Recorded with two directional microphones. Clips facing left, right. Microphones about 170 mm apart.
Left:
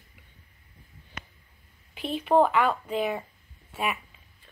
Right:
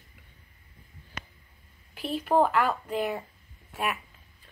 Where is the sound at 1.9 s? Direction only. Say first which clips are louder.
Left 2 dB; 5° right (ahead or behind).